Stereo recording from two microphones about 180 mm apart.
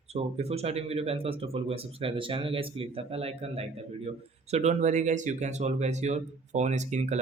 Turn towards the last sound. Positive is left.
turn(degrees=-40)  # may be behind; listen again after turning